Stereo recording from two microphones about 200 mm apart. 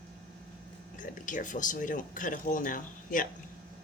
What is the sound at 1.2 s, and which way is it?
Speech, 40° left (ahead or behind).